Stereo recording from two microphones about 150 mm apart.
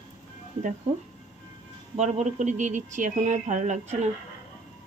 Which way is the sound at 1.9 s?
50° right (ahead or behind).